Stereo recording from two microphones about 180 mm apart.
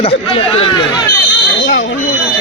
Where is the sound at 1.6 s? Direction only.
90° left.